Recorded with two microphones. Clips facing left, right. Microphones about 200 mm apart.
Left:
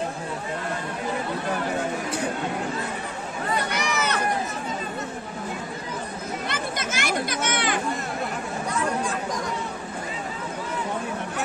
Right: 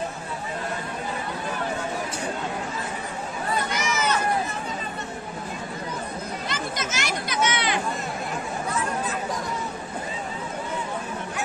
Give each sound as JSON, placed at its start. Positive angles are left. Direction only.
{"t": 3.7, "sound": "run", "side_deg": 65}
{"t": 6.5, "sound": "chatter", "side_deg": 55}